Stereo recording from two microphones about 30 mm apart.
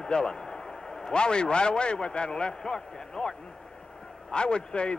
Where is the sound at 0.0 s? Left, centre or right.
Left.